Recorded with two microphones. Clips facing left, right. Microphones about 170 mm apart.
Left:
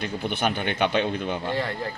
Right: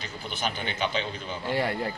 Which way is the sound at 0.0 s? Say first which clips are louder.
Left 7 dB; 60° left (ahead or behind).